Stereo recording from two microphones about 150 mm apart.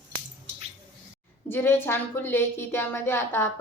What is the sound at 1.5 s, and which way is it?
Speech, 15° left (ahead or behind).